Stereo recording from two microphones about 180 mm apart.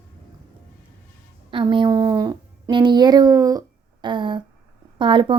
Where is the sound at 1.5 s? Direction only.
25° right (ahead or behind).